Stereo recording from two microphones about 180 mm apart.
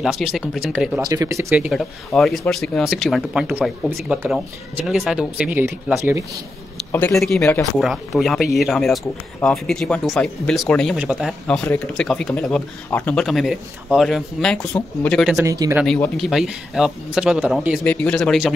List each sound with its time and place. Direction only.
0.0 s speech: centre (ahead or behind)
1.0 s speech: 20° right (ahead or behind)
1.7 s speech: centre (ahead or behind)
6.9 s speech: 10° left (ahead or behind); by 11.3 s 5° right (ahead or behind)
11.4 s speech: 5° left (ahead or behind)
15.3 s speech: 20° right (ahead or behind)
15.8 s speech: centre (ahead or behind)
17.8 s speech: 5° left (ahead or behind)